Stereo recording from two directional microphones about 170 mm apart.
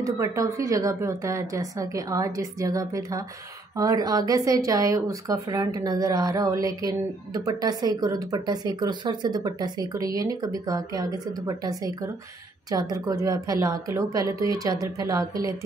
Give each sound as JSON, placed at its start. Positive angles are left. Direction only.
{"t": 0.0, "sound": "speech", "side_deg": -20}